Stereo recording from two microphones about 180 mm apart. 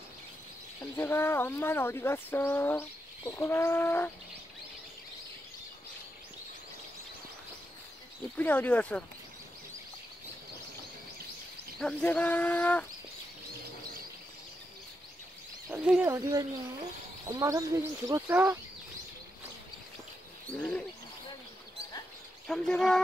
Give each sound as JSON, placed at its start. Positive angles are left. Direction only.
{"t": 0.9, "sound": "speech", "side_deg": 15}
{"t": 8.4, "sound": "speech", "side_deg": 10}
{"t": 11.8, "sound": "speech", "side_deg": 5}
{"t": 15.7, "sound": "speech", "side_deg": -5}
{"t": 16.1, "sound": "speech", "side_deg": -20}
{"t": 20.5, "sound": "speech", "side_deg": 5}
{"t": 22.5, "sound": "speech", "side_deg": 5}